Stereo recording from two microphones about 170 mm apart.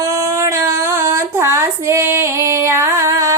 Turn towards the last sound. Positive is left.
turn(degrees=-20)  # may be behind; listen again after turning